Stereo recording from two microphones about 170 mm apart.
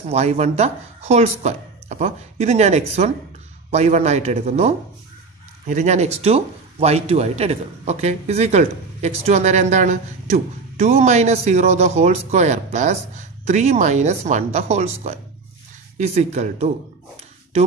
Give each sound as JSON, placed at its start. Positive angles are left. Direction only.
{"t": 0.1, "sound": "a man's voice", "side_deg": -40}